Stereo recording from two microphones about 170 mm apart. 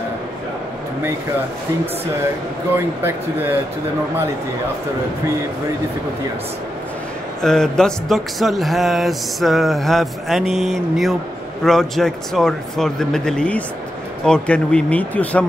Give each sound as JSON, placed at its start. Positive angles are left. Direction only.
{"t": 7.4, "sound": "speech", "side_deg": 5}